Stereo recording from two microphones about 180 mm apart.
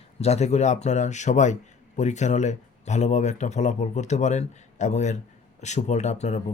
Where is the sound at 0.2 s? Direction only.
35° left (ahead or behind).